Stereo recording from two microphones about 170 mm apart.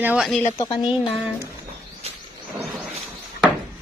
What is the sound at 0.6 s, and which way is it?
Speech, 30° left (ahead or behind).